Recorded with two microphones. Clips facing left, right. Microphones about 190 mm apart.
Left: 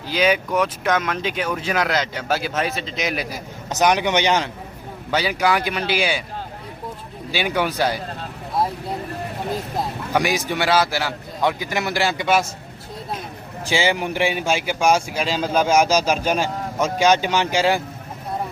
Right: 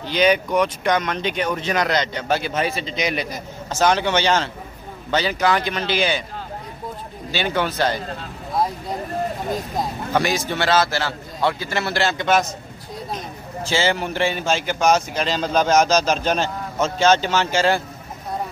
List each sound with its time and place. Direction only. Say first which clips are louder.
0.0 s speech: right 2 dB; 5° left (ahead or behind)
3.7 s a man's voice: even; 15° left (ahead or behind)
7.2 s a man's voice: even; 10° left (ahead or behind)
9.8 s a man's voice: even; 10° left (ahead or behind)
13.7 s a man's voice: left 1 dB; 15° left (ahead or behind)